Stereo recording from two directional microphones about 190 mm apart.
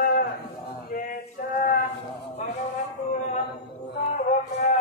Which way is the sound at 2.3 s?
40° left (ahead or behind).